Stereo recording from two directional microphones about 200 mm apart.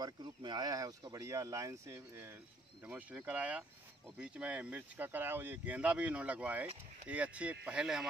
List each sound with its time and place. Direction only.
0.0 s speech: 20° right (ahead or behind); by 8.1 s 5° right (ahead or behind)